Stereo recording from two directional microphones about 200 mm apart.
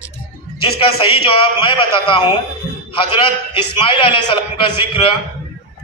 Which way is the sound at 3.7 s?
25° left (ahead or behind).